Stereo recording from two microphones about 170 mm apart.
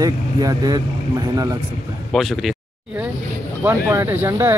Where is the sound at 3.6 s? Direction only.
15° right (ahead or behind).